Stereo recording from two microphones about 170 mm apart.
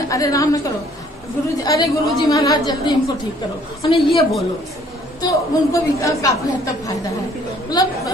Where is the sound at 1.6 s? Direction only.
20° left (ahead or behind).